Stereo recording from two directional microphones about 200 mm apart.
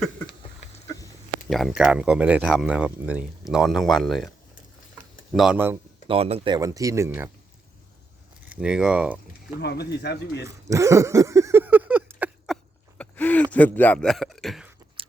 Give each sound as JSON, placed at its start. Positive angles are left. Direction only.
{"t": 0.9, "sound": "chicken", "side_deg": 15}
{"t": 1.5, "sound": "speech", "side_deg": 0}
{"t": 5.3, "sound": "speech", "side_deg": -5}
{"t": 6.1, "sound": "speech", "side_deg": -30}
{"t": 8.5, "sound": "speech", "side_deg": -5}
{"t": 9.6, "sound": "speech", "side_deg": 55}
{"t": 10.4, "sound": "a sound", "side_deg": -15}
{"t": 13.0, "sound": "speech", "side_deg": 10}